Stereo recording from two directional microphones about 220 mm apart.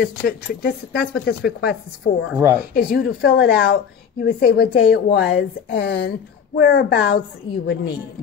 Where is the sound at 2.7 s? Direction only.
45° left (ahead or behind).